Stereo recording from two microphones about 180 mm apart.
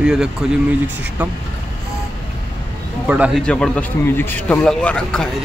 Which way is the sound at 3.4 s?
5° left (ahead or behind).